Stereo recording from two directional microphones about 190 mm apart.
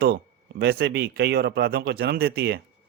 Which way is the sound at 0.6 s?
55° right (ahead or behind).